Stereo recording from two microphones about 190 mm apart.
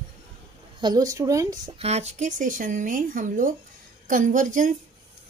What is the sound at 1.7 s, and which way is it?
A woman's voice, 35° right (ahead or behind).